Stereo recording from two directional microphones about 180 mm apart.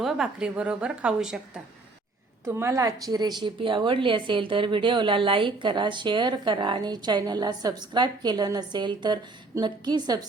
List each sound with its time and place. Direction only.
0.0 s a woman's voice: centre (ahead or behind); by 10.2 s 25° right (ahead or behind)